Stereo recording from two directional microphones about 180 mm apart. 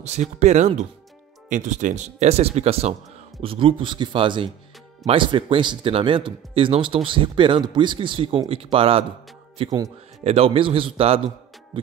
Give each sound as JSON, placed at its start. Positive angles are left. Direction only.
{"t": 0.0, "sound": "speech", "side_deg": -40}
{"t": 10.2, "sound": "speech", "side_deg": -35}